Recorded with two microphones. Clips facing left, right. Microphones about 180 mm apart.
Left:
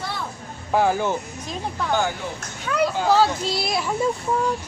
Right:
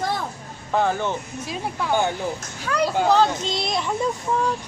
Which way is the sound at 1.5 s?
5° right (ahead or behind).